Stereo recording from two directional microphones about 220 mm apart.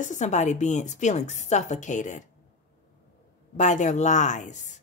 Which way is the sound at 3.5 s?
35° left (ahead or behind).